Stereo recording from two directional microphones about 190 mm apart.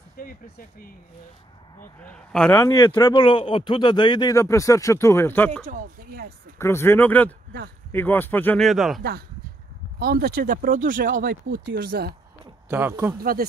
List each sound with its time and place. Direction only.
0.2 s speech: 50° left (ahead or behind)
1.8 s a man's voice: 5° left (ahead or behind)
2.7 s a man's voice: 25° left (ahead or behind)
5.7 s speech: 45° right (ahead or behind)
6.6 s speech: 15° left (ahead or behind)
9.9 s speech: 55° right (ahead or behind)
11.6 s speech: 65° right (ahead or behind)
12.6 s speech: 10° right (ahead or behind)
13.2 s speech: 50° right (ahead or behind)